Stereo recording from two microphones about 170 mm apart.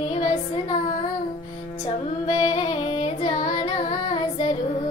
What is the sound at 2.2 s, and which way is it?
Music, 30° left (ahead or behind).